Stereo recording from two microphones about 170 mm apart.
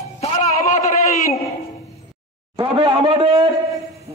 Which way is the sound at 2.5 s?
30° right (ahead or behind).